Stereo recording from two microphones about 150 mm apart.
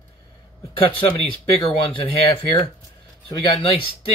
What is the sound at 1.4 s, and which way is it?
Speech, 35° left (ahead or behind).